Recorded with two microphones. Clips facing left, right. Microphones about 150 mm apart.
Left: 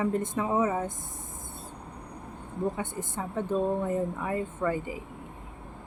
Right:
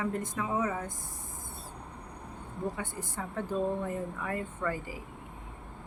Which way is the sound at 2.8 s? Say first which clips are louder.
Left 4 dB; 20° left (ahead or behind).